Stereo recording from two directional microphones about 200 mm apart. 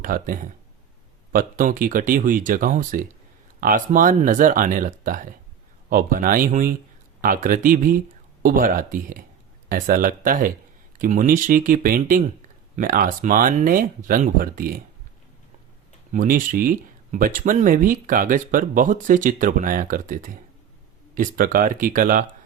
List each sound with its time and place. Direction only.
0.0 s speech: 45° right (ahead or behind)
16.1 s speech: 45° right (ahead or behind)